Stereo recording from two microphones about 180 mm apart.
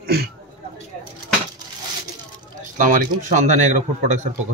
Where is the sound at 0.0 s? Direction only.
60° right (ahead or behind).